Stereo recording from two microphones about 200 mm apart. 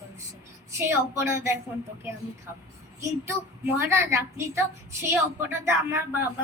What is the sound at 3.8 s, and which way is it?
A woman's voice, 10° right (ahead or behind).